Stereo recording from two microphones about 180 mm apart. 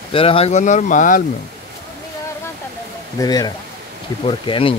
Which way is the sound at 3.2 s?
20° left (ahead or behind).